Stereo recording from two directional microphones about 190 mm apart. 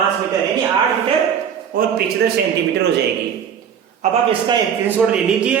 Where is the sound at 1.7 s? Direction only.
50° right (ahead or behind).